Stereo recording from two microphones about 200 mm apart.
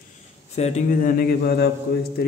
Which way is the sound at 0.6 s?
35° left (ahead or behind).